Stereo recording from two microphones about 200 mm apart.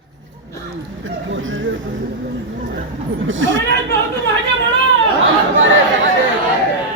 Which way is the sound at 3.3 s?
70° right (ahead or behind).